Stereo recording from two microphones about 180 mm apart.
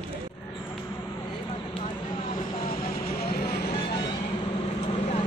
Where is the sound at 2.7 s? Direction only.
60° left (ahead or behind).